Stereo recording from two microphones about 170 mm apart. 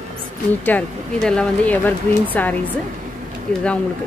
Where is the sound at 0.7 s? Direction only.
5° left (ahead or behind).